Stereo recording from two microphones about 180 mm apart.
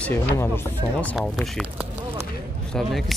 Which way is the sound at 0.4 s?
10° left (ahead or behind).